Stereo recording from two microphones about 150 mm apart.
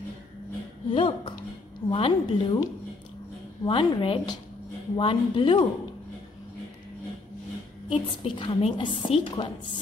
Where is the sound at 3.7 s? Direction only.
30° left (ahead or behind).